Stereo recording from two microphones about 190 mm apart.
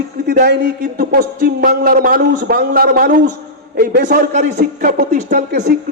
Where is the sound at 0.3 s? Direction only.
50° right (ahead or behind).